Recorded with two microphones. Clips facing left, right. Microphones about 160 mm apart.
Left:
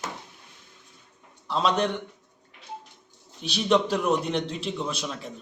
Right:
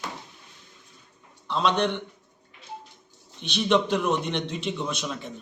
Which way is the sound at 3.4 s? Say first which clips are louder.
Even; 35° left (ahead or behind).